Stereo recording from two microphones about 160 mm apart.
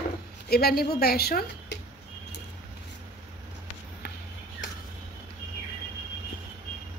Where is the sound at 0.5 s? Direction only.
75° left (ahead or behind).